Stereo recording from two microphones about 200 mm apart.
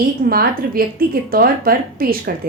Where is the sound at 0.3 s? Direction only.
50° right (ahead or behind).